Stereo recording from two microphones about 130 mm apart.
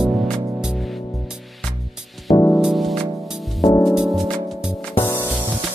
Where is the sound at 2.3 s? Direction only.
30° left (ahead or behind).